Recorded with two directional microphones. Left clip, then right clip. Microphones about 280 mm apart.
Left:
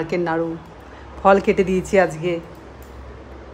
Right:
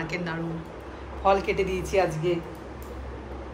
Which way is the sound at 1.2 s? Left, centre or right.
Left.